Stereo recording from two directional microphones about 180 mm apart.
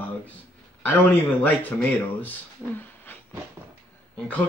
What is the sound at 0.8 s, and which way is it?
Speech, 10° left (ahead or behind).